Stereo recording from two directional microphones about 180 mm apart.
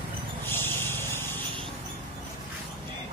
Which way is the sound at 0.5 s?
10° left (ahead or behind).